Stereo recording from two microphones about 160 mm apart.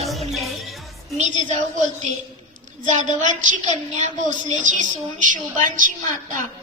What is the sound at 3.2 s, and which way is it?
A woman's voice, 50° right (ahead or behind).